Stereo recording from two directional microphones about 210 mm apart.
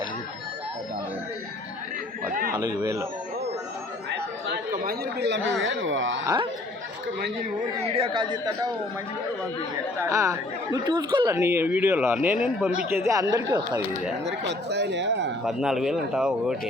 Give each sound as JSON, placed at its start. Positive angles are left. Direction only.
{"t": 2.6, "sound": "a man's voice", "side_deg": -15}
{"t": 4.1, "sound": "chatter", "side_deg": -50}
{"t": 5.6, "sound": "speech", "side_deg": -65}
{"t": 6.2, "sound": "speech", "side_deg": -20}
{"t": 7.8, "sound": "speech", "side_deg": -25}
{"t": 10.0, "sound": "a man's voice", "side_deg": -15}
{"t": 11.3, "sound": "a man's voice", "side_deg": -10}
{"t": 14.3, "sound": "speech", "side_deg": -55}
{"t": 15.4, "sound": "speech", "side_deg": 0}